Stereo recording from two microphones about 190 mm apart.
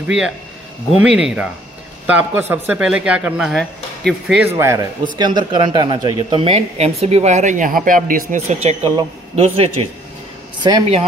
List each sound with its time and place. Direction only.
0.0 s speech: 5° right (ahead or behind)
4.6 s speech: 15° right (ahead or behind); by 8.5 s 45° right (ahead or behind)
9.3 s speech: 30° right (ahead or behind)